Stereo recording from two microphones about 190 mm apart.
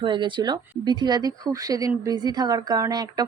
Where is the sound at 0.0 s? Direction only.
25° right (ahead or behind).